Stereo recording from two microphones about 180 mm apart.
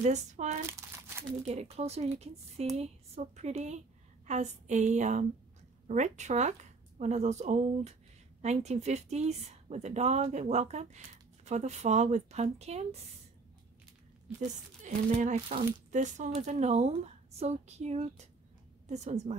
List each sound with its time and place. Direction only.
0.0 s a woman's voice: 40° right (ahead or behind)
0.7 s crumpling: 15° right (ahead or behind)
1.4 s a woman's voice: 35° right (ahead or behind)
14.8 s a woman's voice: 45° right (ahead or behind)